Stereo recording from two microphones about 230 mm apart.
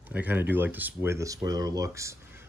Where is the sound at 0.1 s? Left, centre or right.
Centre.